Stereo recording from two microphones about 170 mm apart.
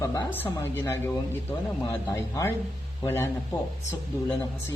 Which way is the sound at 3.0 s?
15° left (ahead or behind).